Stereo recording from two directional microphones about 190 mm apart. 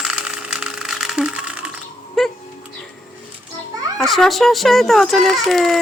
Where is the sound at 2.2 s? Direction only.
Centre (ahead or behind).